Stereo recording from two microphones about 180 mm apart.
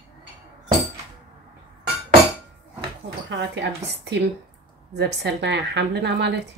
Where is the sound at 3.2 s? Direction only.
75° right (ahead or behind).